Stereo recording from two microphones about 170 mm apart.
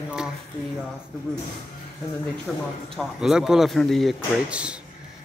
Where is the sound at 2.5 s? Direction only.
Centre (ahead or behind).